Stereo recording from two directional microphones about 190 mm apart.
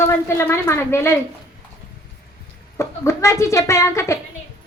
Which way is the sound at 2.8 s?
15° left (ahead or behind).